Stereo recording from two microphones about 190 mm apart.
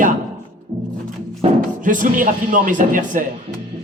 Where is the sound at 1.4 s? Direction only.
45° right (ahead or behind).